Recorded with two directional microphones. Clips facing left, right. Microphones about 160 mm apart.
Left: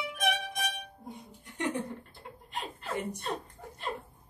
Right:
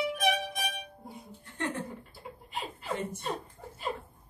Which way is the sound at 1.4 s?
15° left (ahead or behind).